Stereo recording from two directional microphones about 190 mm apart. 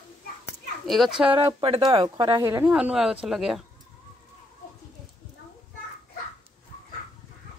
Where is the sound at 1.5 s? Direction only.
25° right (ahead or behind).